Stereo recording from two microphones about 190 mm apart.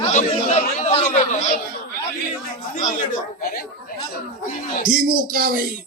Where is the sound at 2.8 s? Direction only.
40° left (ahead or behind).